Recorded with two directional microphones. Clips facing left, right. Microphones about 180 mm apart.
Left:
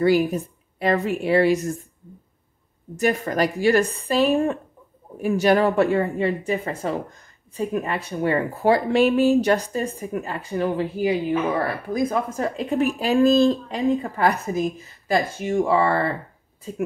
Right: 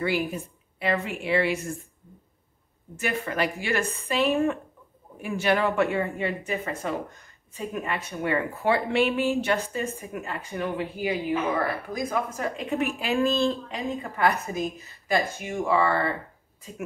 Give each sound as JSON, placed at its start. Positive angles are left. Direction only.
{"t": 0.0, "sound": "speech", "side_deg": 40}
{"t": 3.0, "sound": "speech", "side_deg": 40}